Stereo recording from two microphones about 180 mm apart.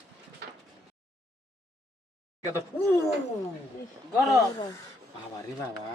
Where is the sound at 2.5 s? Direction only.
15° left (ahead or behind).